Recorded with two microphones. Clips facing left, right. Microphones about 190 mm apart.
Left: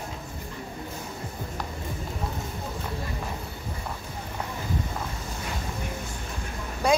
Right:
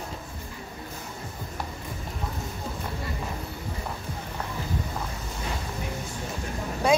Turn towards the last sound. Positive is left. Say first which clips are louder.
# right 1 dB
turn(degrees=0)  # may be behind; listen again after turning